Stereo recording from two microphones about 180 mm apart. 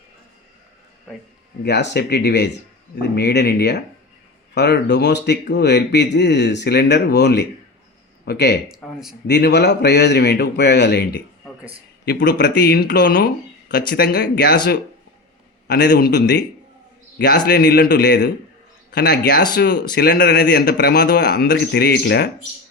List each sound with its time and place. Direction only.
1.6 s speech: 70° left (ahead or behind)
8.7 s speech: centre (ahead or behind)
9.2 s speech: 70° left (ahead or behind)
12.0 s speech: 65° left (ahead or behind)
15.6 s speech: 65° left (ahead or behind)